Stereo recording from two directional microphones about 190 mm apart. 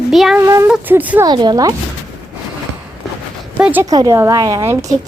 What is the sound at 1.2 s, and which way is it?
Speech, 20° right (ahead or behind).